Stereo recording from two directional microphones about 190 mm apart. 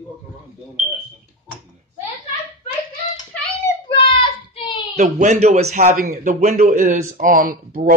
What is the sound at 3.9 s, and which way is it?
Child singing, 25° left (ahead or behind).